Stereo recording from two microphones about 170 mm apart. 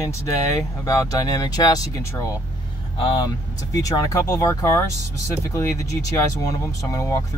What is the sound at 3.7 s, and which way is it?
Speech, 20° left (ahead or behind).